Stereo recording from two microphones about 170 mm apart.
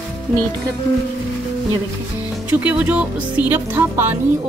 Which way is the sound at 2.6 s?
10° right (ahead or behind).